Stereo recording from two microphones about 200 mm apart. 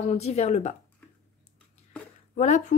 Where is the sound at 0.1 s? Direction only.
35° left (ahead or behind).